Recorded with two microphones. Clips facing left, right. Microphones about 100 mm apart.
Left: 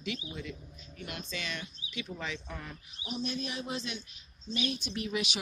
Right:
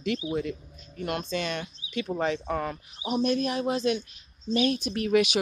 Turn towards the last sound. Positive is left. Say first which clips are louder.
# right 12 dB
turn(degrees=-60)  # may be behind; listen again after turning